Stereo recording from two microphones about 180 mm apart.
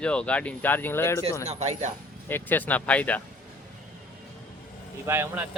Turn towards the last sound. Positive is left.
turn(degrees=-10)  # may be behind; listen again after turning